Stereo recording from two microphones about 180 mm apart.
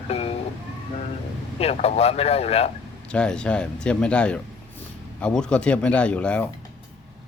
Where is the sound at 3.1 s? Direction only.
5° left (ahead or behind).